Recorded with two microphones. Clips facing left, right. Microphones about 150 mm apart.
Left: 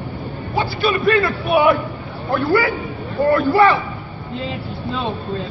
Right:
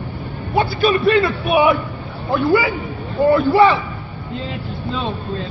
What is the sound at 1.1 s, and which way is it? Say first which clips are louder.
A man's voice: right 1 dB; 20° right (ahead or behind).